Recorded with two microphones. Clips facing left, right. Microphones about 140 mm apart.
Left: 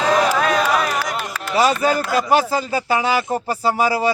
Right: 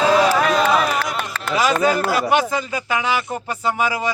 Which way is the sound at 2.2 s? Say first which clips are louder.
Left 1 dB; 35° left (ahead or behind).